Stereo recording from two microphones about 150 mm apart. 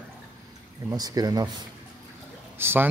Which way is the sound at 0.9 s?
25° right (ahead or behind).